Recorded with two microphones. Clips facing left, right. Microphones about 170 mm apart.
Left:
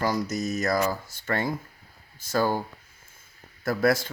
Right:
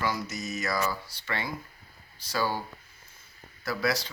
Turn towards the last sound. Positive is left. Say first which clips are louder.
# left 6 dB
turn(degrees=50)  # may be behind; listen again after turning